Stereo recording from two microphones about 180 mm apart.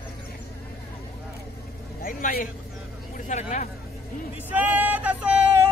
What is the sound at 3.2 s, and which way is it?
Speech, 40° left (ahead or behind).